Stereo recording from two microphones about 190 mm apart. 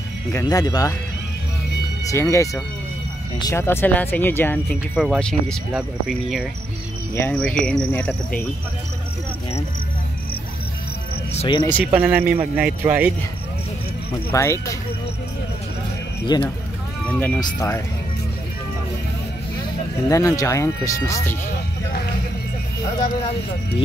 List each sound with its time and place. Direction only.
0.3 s speech: 15° left (ahead or behind)
2.0 s speech: 15° left (ahead or behind)
4.9 s speech: centre (ahead or behind)
11.3 s speech: 25° left (ahead or behind)
11.9 s speech: 10° right (ahead or behind)
14.1 s speech: 15° left (ahead or behind)
16.3 s speech: 20° left (ahead or behind)
17.1 s speech: 10° left (ahead or behind)
17.4 s speech: 20° left (ahead or behind)
20.1 s speech: 15° left (ahead or behind)